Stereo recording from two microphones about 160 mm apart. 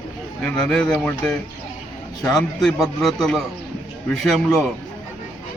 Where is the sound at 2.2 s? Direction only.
5° left (ahead or behind).